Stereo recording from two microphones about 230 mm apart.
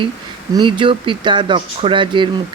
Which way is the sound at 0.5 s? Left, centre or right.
Right.